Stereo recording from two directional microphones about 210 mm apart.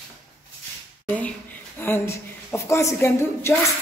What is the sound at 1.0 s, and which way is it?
A woman's voice, 5° left (ahead or behind).